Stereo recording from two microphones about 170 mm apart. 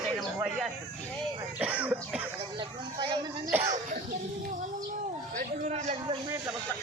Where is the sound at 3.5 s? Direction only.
15° right (ahead or behind).